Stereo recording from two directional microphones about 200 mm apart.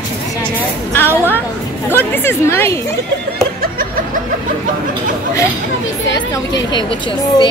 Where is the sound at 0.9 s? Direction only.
10° left (ahead or behind).